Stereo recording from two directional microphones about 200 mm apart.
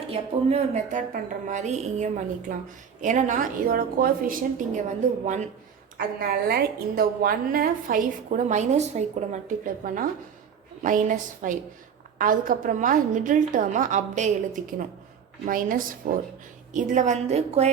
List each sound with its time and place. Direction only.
0.1 s a woman's voice: 30° right (ahead or behind)
6.0 s a woman's voice: 50° right (ahead or behind); by 17.7 s 35° right (ahead or behind)